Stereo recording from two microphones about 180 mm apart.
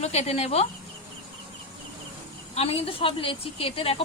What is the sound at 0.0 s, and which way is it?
Speech, 35° left (ahead or behind).